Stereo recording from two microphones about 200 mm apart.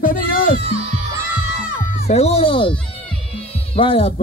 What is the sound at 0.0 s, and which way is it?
Music, 45° left (ahead or behind).